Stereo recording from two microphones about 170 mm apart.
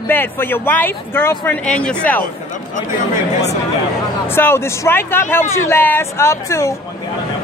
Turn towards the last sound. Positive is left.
turn(degrees=15)  # may be behind; listen again after turning